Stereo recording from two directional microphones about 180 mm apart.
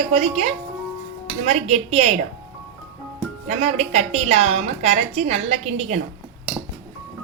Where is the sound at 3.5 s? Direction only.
40° right (ahead or behind).